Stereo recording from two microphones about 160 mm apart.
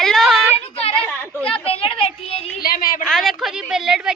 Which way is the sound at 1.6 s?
35° left (ahead or behind).